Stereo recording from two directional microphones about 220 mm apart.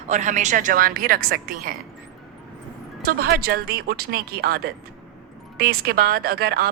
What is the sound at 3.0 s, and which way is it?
A woman's voice, 45° right (ahead or behind).